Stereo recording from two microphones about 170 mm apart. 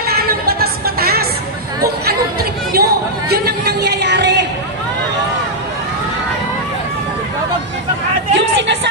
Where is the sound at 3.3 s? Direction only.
70° right (ahead or behind); by 4.4 s 90° right.